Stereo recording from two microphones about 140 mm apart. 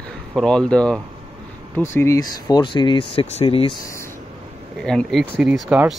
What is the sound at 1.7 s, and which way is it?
Speech, 20° left (ahead or behind).